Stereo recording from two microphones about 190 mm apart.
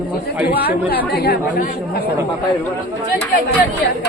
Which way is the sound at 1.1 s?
55° left (ahead or behind).